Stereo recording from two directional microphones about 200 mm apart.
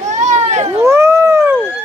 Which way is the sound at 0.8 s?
15° right (ahead or behind).